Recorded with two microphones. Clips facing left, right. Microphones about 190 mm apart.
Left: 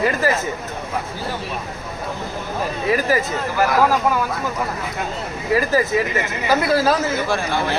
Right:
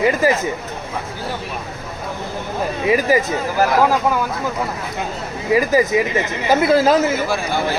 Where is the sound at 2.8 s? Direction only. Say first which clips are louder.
Right 3 dB; 15° right (ahead or behind).